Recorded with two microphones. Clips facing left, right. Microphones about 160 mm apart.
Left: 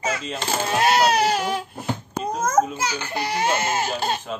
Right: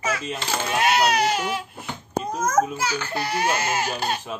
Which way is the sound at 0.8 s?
35° left (ahead or behind).